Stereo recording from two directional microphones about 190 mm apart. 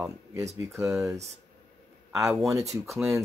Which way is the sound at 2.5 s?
15° right (ahead or behind).